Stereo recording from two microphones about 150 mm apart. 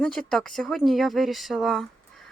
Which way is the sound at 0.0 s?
5° left (ahead or behind).